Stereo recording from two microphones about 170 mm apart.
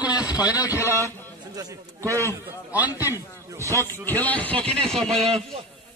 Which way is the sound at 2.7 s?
10° right (ahead or behind).